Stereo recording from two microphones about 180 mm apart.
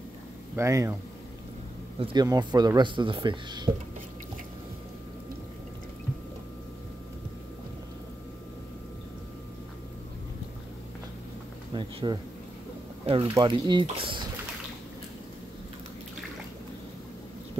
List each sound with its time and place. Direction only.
0.6 s speech: 15° right (ahead or behind)
2.0 s speech: 25° right (ahead or behind)
11.7 s speech: 25° right (ahead or behind)